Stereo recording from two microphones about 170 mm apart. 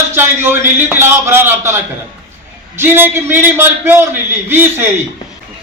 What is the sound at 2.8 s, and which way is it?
A man's voice, 10° right (ahead or behind).